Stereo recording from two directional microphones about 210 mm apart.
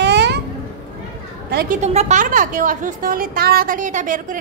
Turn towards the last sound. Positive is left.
turn(degrees=-35)  # may be behind; listen again after turning